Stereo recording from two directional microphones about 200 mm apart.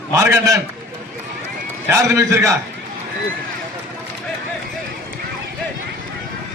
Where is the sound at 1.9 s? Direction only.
15° right (ahead or behind).